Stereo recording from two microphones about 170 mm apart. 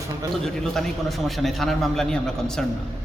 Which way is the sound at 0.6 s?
Centre (ahead or behind).